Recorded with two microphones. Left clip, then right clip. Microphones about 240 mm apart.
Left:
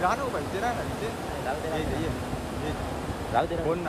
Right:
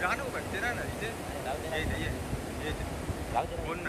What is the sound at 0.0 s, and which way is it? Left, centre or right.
Speech, centre.